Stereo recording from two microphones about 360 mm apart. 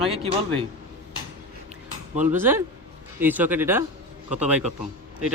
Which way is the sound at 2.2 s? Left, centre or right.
Centre.